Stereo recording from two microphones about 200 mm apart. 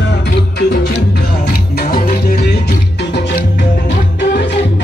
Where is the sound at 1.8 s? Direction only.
50° left (ahead or behind).